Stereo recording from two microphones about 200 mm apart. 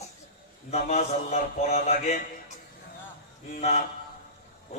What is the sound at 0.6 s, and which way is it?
A man's voice, 35° left (ahead or behind).